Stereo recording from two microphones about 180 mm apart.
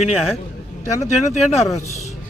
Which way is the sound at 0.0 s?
35° left (ahead or behind).